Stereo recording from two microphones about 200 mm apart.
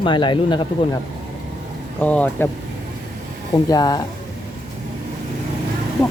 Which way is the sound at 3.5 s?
20° left (ahead or behind).